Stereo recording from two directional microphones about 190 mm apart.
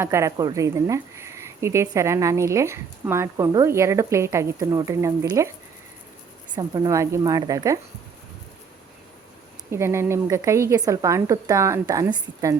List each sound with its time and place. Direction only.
0.0 s speech: 15° right (ahead or behind)
6.5 s a woman's voice: 20° right (ahead or behind)
9.7 s speech: 15° right (ahead or behind)